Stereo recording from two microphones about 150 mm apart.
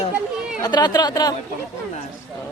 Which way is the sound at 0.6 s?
30° left (ahead or behind).